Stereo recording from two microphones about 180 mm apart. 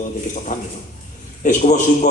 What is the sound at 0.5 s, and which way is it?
A man's voice, 45° left (ahead or behind).